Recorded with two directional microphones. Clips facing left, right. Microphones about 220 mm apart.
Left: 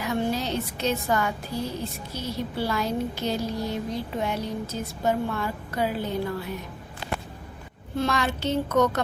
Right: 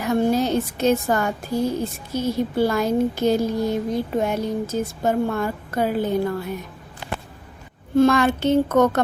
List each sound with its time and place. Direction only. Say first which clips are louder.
0.0 s a woman's voice: right 7 dB; 45° right (ahead or behind)
7.9 s a woman's voice: right 10 dB; 50° right (ahead or behind)